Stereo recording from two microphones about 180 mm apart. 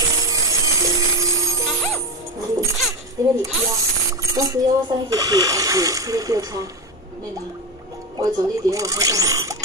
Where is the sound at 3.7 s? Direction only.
20° right (ahead or behind).